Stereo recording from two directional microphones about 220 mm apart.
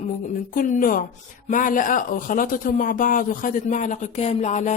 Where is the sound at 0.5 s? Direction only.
35° left (ahead or behind).